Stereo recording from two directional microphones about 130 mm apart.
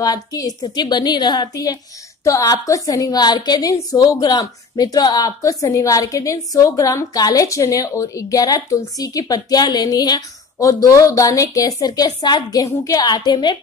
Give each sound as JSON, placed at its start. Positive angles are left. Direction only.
{"t": 0.0, "sound": "a woman's voice", "side_deg": 30}